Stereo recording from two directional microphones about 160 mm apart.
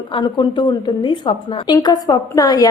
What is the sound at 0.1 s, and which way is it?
A woman's voice, 30° left (ahead or behind).